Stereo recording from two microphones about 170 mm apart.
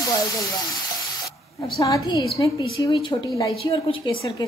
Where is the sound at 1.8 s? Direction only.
20° left (ahead or behind).